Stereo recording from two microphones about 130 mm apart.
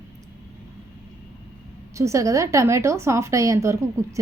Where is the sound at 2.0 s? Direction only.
25° right (ahead or behind).